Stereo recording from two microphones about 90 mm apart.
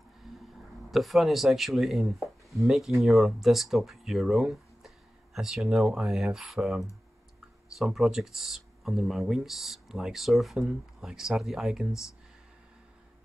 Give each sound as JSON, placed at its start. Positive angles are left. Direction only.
{"t": 0.9, "sound": "speech", "side_deg": 0}